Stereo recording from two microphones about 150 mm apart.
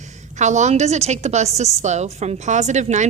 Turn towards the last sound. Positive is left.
turn(degrees=-50)  # may be behind; listen again after turning